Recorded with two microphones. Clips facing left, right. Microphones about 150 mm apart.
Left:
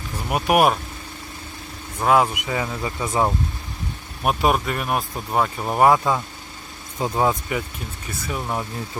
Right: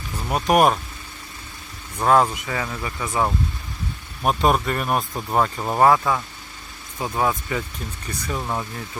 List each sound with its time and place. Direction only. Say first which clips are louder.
0.3 s speech: even; 10° left (ahead or behind)
2.0 s speech: even; 5° left (ahead or behind)
2.4 s speech: left 2 dB; 20° left (ahead or behind)
4.2 s speech: right 1 dB; 5° left (ahead or behind)
8.3 s speech: even; 10° left (ahead or behind)